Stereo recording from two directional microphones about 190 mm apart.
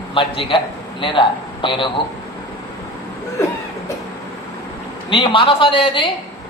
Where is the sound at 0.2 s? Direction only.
25° left (ahead or behind).